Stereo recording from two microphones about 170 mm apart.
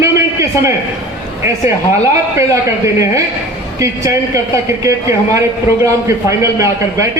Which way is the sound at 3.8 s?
20° right (ahead or behind).